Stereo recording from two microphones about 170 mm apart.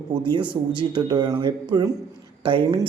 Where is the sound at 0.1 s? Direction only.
25° right (ahead or behind).